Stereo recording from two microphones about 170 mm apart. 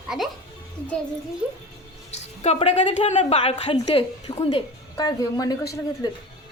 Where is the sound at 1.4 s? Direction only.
5° right (ahead or behind).